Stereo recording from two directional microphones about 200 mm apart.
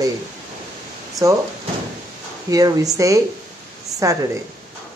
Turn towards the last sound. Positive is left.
turn(degrees=-15)  # may be behind; listen again after turning